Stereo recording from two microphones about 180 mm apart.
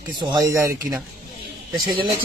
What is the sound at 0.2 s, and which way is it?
Speech, 20° right (ahead or behind).